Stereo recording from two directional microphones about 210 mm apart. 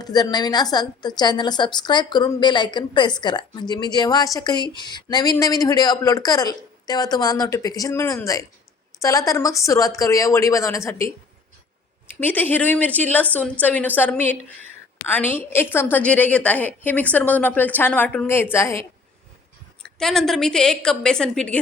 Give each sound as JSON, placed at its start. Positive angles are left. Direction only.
{"t": 0.0, "sound": "a woman's voice", "side_deg": 20}
{"t": 12.2, "sound": "a woman's voice", "side_deg": 10}
{"t": 19.8, "sound": "a woman's voice", "side_deg": 0}